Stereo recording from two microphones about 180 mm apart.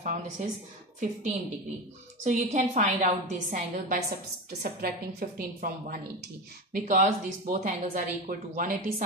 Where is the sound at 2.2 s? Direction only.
40° right (ahead or behind).